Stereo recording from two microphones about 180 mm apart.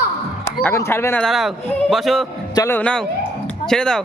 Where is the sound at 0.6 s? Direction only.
10° left (ahead or behind).